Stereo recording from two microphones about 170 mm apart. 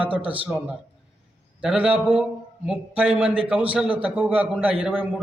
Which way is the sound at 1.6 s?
5° right (ahead or behind).